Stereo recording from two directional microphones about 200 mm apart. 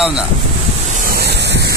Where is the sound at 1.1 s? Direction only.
55° right (ahead or behind).